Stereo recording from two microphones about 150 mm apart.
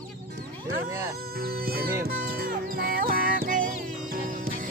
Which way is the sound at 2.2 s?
75° right (ahead or behind).